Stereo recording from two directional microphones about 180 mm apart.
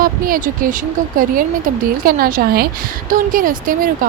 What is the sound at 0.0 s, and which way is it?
Speech, 50° right (ahead or behind).